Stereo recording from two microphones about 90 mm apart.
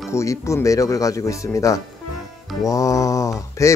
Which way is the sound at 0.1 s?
35° left (ahead or behind).